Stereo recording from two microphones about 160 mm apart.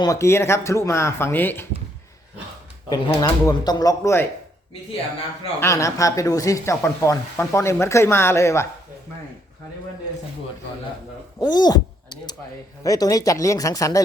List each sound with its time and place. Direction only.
0.0 s speech: 20° left (ahead or behind)
3.1 s speech: 25° left (ahead or behind)
5.5 s speech: 20° left (ahead or behind)
11.3 s speech: 25° left (ahead or behind)